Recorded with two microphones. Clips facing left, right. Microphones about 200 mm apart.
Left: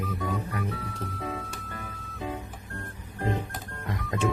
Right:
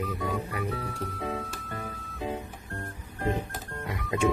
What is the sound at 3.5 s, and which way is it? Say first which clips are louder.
Music: even; centre (ahead or behind).